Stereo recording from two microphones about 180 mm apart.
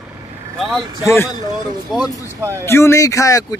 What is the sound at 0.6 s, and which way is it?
Speech, centre (ahead or behind).